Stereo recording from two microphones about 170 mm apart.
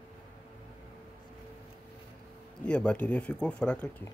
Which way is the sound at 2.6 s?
5° left (ahead or behind).